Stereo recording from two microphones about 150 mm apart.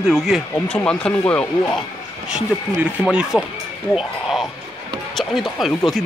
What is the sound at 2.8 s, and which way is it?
Speech, 10° right (ahead or behind).